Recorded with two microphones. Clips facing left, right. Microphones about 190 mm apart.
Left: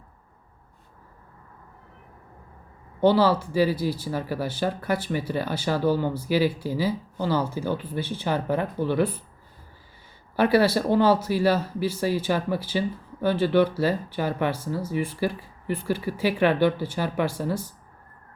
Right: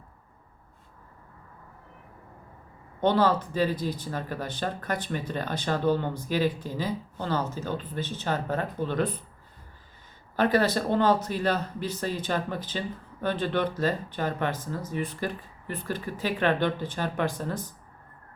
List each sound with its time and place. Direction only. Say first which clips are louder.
3.0 s speech: left 4 dB; 10° left (ahead or behind)
10.3 s speech: left 4 dB; 10° left (ahead or behind)